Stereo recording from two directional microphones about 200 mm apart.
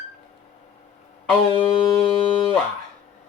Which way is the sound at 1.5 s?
25° left (ahead or behind).